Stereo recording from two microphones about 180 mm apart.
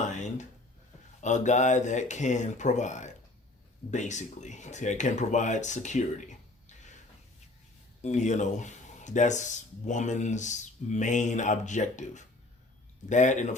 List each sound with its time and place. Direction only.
0.1 s a sound: 40° left (ahead or behind)
1.2 s speech: 40° left (ahead or behind)
8.0 s speech: 40° left (ahead or behind)